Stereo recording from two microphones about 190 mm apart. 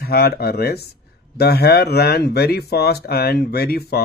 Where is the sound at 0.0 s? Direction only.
55° left (ahead or behind).